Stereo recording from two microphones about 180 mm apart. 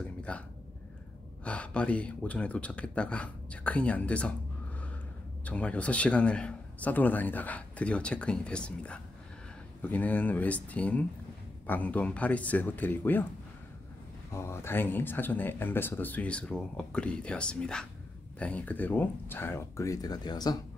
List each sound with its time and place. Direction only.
0.0 s a sound: 5° left (ahead or behind)
1.4 s a man's voice: 5° left (ahead or behind)
5.4 s a man's voice: 5° left (ahead or behind)
14.3 s a man's voice: 15° left (ahead or behind)